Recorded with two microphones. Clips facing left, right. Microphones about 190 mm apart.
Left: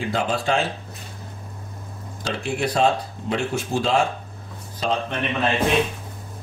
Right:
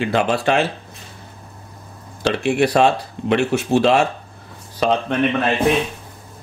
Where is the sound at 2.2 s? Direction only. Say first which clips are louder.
Right 8 dB; 70° right (ahead or behind).